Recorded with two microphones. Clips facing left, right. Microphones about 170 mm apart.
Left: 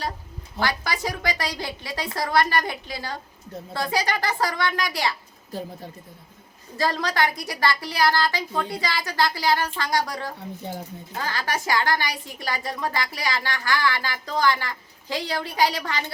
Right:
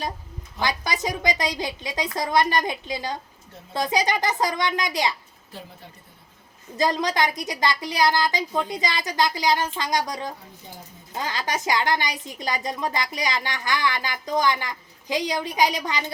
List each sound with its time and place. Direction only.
0.6 s a woman's voice: 20° right (ahead or behind)
5.5 s a woman's voice: 40° left (ahead or behind)
6.7 s a woman's voice: 20° right (ahead or behind)